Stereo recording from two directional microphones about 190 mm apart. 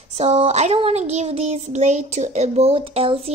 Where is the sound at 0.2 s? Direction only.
35° right (ahead or behind).